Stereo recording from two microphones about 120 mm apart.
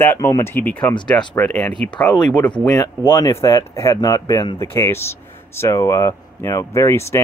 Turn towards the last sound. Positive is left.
turn(degrees=25)  # may be behind; listen again after turning